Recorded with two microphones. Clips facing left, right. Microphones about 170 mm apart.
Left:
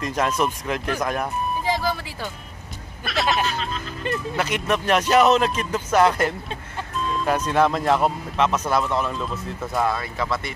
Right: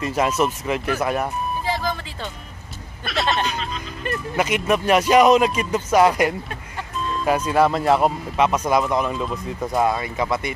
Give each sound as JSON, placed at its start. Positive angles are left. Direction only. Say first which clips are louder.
{"t": 0.0, "sound": "speech", "louder": "right 2 dB", "side_deg": -5}
{"t": 1.7, "sound": "vehicle", "louder": "left 1 dB", "side_deg": 10}
{"t": 3.1, "sound": "speech", "louder": "even", "side_deg": 0}